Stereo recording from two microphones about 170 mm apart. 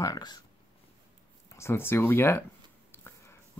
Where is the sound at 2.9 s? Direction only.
15° left (ahead or behind).